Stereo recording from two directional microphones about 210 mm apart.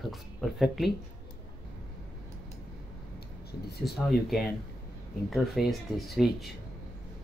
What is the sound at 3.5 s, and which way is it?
Speech, 50° left (ahead or behind).